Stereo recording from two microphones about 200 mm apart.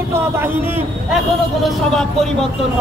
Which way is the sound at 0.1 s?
10° right (ahead or behind).